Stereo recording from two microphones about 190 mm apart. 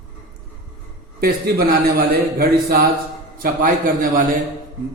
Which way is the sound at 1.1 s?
55° right (ahead or behind).